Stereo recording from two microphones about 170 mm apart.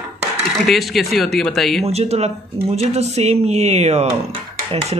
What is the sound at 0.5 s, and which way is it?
Speech, centre (ahead or behind).